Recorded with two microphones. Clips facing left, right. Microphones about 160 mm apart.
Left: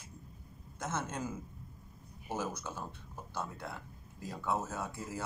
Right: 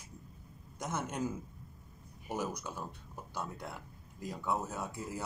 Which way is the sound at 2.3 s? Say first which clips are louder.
Even; 15° right (ahead or behind).